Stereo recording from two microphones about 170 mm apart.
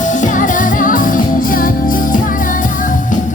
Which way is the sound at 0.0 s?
50° left (ahead or behind).